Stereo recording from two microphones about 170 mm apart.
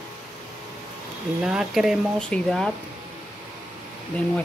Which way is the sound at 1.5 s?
5° right (ahead or behind).